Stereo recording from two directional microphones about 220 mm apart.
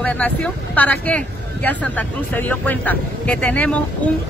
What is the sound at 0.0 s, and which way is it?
Speech, 5° left (ahead or behind).